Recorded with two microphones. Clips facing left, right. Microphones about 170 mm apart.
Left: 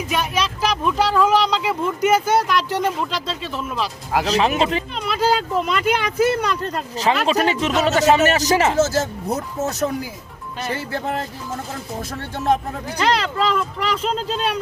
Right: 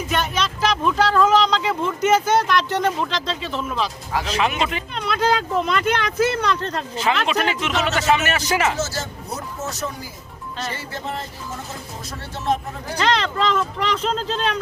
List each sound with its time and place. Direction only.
0.1 s speech: 10° left (ahead or behind)
4.1 s speech: 40° left (ahead or behind)
4.9 s speech: 5° left (ahead or behind)
6.9 s speech: 35° left (ahead or behind)
8.8 s speech: 50° left (ahead or behind)
13.0 s speech: 5° left (ahead or behind)